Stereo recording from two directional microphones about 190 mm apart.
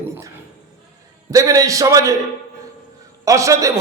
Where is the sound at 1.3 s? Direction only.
15° right (ahead or behind).